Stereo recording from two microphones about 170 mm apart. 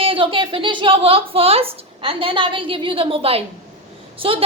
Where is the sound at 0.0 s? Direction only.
35° right (ahead or behind).